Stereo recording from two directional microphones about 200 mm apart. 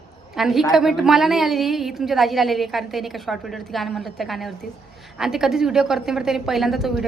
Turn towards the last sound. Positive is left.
turn(degrees=0)  # may be behind; listen again after turning